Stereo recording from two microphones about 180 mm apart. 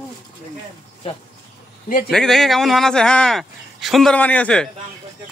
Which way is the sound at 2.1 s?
5° left (ahead or behind).